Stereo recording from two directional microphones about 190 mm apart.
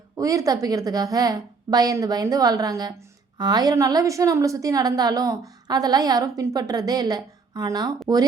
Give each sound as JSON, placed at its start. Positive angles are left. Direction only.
{"t": 0.2, "sound": "a woman's voice", "side_deg": -20}